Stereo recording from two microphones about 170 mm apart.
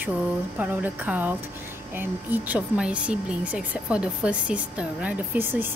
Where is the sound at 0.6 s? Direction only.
10° right (ahead or behind).